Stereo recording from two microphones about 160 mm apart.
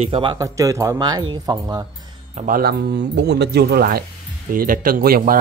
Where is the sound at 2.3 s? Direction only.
50° right (ahead or behind).